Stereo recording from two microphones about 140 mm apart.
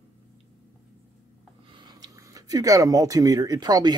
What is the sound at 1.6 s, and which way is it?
Speech, 35° right (ahead or behind).